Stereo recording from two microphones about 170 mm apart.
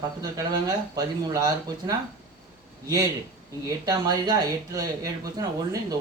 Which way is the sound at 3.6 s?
20° right (ahead or behind).